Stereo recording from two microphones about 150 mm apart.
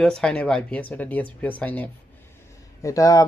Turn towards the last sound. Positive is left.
turn(degrees=20)  # may be behind; listen again after turning